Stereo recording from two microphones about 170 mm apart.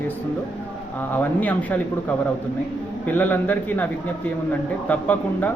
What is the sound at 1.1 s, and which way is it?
Speech, 10° left (ahead or behind).